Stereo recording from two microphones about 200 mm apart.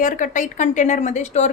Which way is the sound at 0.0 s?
40° left (ahead or behind).